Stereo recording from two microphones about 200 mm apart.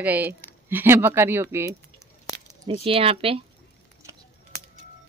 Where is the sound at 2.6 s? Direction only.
30° right (ahead or behind).